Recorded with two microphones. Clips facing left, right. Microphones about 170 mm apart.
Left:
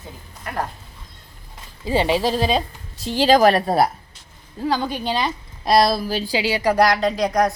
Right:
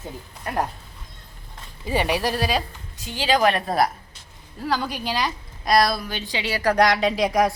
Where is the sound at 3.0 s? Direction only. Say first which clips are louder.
Left 6 dB; 35° left (ahead or behind).